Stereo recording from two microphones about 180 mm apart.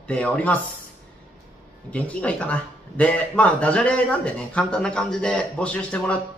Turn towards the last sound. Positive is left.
turn(degrees=5)  # may be behind; listen again after turning